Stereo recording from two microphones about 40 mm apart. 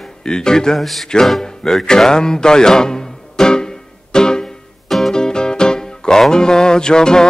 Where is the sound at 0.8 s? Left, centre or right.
Centre.